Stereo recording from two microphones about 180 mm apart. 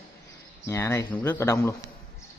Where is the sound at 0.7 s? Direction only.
15° left (ahead or behind).